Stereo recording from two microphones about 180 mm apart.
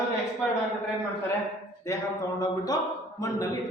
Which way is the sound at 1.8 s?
20° left (ahead or behind).